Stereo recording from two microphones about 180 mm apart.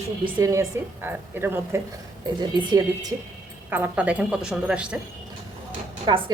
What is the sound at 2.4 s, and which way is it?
Speech, 25° right (ahead or behind).